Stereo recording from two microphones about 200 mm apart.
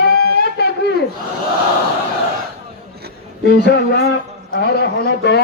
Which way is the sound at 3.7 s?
50° left (ahead or behind).